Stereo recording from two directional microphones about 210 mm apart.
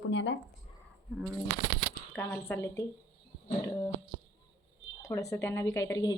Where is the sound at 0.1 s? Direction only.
60° left (ahead or behind).